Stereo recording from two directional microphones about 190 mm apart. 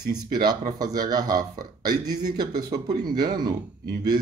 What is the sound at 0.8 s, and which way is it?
Speech, 20° right (ahead or behind).